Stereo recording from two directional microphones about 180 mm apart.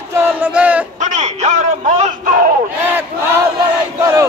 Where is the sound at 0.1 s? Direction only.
10° right (ahead or behind).